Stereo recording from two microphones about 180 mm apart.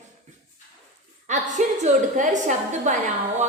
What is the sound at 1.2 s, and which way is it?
A woman's voice, 40° right (ahead or behind).